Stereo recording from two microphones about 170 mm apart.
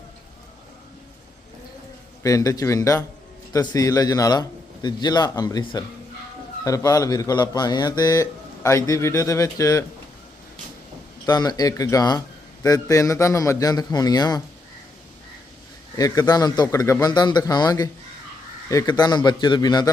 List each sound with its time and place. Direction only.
2.2 s a man's voice: 20° left (ahead or behind)
11.3 s a man's voice: 25° left (ahead or behind)
16.0 s a man's voice: 20° left (ahead or behind)